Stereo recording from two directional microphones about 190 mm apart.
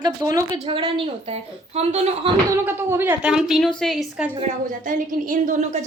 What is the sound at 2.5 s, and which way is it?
A woman's voice, 10° right (ahead or behind).